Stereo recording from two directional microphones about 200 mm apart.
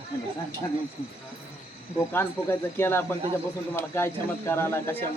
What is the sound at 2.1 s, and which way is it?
Speech, 10° left (ahead or behind).